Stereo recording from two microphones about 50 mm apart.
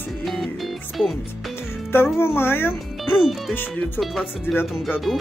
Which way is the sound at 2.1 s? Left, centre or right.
Left.